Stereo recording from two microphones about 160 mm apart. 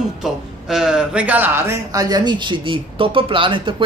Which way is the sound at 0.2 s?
5° right (ahead or behind).